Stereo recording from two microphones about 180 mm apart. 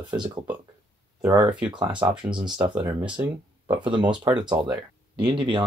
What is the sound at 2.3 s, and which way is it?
Speech, 25° right (ahead or behind).